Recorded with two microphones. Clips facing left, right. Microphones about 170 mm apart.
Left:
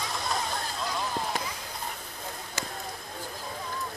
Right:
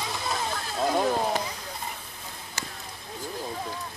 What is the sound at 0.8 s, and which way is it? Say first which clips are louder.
Vehicle: right 11 dB; 50° right (ahead or behind).